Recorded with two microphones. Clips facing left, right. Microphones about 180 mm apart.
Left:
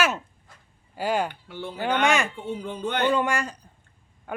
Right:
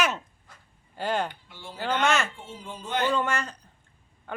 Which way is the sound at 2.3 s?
60° left (ahead or behind).